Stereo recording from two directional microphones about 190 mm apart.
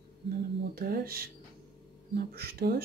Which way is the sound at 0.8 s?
55° right (ahead or behind).